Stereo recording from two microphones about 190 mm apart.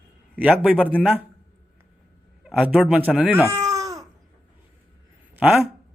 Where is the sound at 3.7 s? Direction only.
15° right (ahead or behind).